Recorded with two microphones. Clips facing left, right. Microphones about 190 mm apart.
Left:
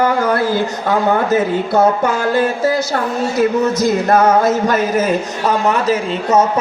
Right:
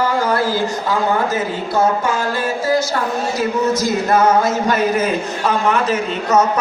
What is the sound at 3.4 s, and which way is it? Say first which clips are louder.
Speech: left 4 dB; 55° left (ahead or behind).